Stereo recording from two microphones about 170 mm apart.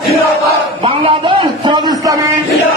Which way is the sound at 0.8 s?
30° right (ahead or behind).